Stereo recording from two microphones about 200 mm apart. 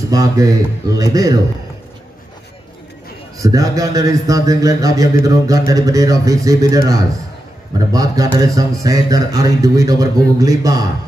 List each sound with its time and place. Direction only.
0.1 s a man's voice: 15° right (ahead or behind)
3.4 s a man's voice: 15° right (ahead or behind)